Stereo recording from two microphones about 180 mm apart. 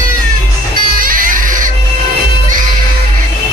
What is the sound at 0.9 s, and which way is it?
Music, 50° right (ahead or behind).